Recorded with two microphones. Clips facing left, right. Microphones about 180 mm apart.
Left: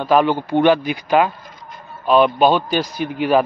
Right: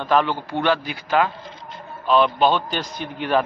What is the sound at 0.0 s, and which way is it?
A man's voice, 10° left (ahead or behind).